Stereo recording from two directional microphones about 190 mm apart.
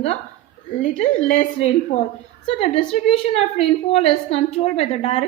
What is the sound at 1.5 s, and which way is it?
A woman's voice, 35° left (ahead or behind).